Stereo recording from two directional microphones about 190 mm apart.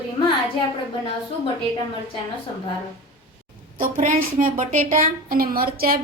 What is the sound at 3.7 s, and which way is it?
A woman's voice, 45° right (ahead or behind).